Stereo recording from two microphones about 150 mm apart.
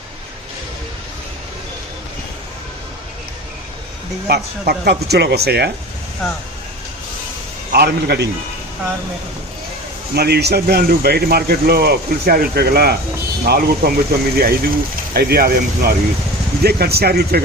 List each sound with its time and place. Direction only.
4.3 s speech: 90° right
7.7 s speech: 90° right
10.2 s speech: 90° right